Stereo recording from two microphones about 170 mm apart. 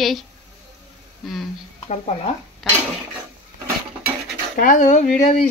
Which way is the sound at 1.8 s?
35° left (ahead or behind).